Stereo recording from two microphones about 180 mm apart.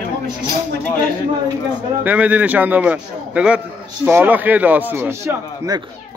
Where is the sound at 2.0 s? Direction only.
10° right (ahead or behind).